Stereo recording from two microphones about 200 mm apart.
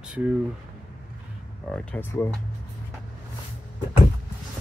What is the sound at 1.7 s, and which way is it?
Speech, 10° left (ahead or behind).